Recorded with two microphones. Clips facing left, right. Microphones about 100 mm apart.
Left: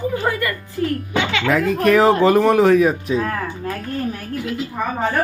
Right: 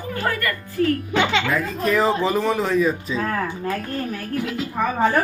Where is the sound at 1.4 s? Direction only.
80° left.